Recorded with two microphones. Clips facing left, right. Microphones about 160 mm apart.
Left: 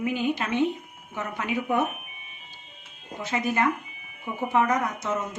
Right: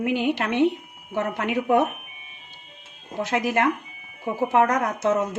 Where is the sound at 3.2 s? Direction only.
70° right (ahead or behind).